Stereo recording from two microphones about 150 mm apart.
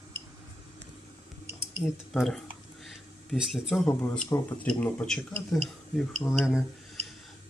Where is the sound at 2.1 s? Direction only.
Centre (ahead or behind).